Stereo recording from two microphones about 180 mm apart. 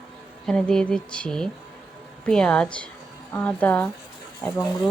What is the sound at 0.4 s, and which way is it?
Speech, 5° left (ahead or behind).